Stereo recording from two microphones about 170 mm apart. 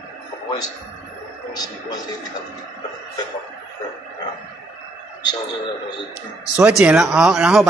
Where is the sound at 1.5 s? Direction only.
25° left (ahead or behind).